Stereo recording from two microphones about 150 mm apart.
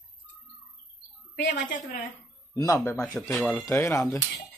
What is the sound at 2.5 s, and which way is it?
Speech, 20° left (ahead or behind).